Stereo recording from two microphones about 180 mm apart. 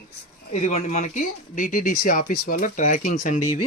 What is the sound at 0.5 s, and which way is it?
Speech, 40° left (ahead or behind).